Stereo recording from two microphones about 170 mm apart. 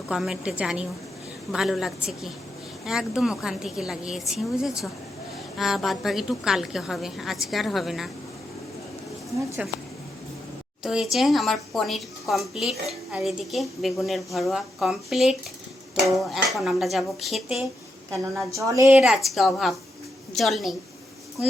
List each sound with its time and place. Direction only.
0.1 s a woman's voice: 5° right (ahead or behind)
9.6 s a woman's voice: 5° right (ahead or behind)
10.8 s a woman's voice: centre (ahead or behind)
18.1 s a woman's voice: 20° right (ahead or behind)
18.9 s a woman's voice: 5° right (ahead or behind)